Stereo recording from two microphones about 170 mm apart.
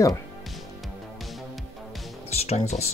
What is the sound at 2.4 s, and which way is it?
Speech, 40° left (ahead or behind).